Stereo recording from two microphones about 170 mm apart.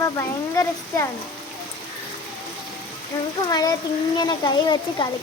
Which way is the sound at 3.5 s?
25° left (ahead or behind).